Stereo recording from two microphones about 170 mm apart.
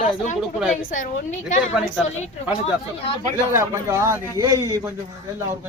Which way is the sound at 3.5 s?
15° right (ahead or behind).